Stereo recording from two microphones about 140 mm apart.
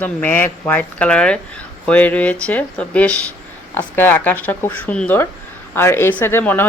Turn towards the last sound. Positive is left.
turn(degrees=15)  # may be behind; listen again after turning